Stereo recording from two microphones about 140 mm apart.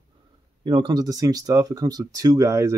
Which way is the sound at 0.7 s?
30° right (ahead or behind).